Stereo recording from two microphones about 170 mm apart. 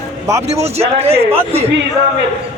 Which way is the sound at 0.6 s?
35° right (ahead or behind).